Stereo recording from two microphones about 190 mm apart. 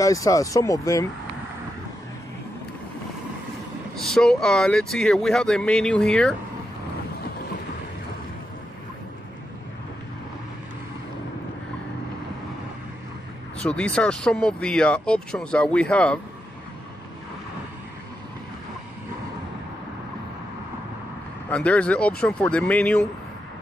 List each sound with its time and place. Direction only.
0.0 s speech: 20° left (ahead or behind)
3.9 s speech: 5° left (ahead or behind)
13.6 s speech: 5° left (ahead or behind)
21.5 s speech: 5° left (ahead or behind)